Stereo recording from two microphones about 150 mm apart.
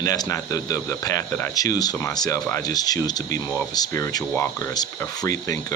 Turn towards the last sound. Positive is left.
turn(degrees=20)  # may be behind; listen again after turning